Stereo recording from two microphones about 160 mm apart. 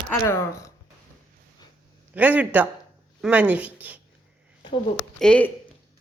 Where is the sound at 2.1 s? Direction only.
10° right (ahead or behind).